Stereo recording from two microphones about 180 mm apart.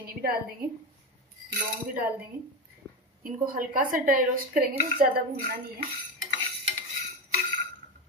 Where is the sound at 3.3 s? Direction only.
50° right (ahead or behind).